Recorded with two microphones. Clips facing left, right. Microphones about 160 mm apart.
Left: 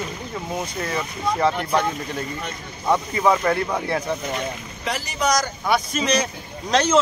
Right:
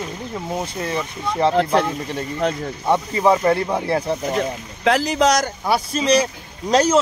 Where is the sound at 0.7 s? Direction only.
25° right (ahead or behind).